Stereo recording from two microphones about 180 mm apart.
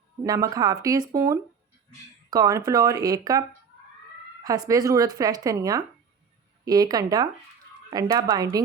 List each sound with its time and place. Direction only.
0.3 s speech: 20° right (ahead or behind)
4.4 s speech: 20° right (ahead or behind)